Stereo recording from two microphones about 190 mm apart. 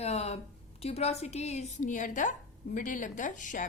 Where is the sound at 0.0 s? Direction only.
35° left (ahead or behind).